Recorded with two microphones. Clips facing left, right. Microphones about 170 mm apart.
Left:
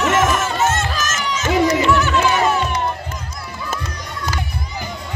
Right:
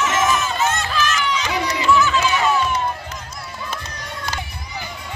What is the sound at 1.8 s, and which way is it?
Music, 65° left (ahead or behind).